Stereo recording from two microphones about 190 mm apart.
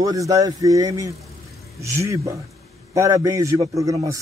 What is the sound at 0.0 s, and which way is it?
A man's voice, 20° right (ahead or behind).